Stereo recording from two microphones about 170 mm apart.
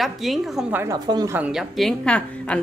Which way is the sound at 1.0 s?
25° right (ahead or behind).